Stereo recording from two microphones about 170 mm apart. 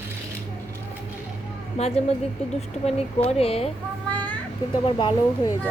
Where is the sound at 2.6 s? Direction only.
40° left (ahead or behind).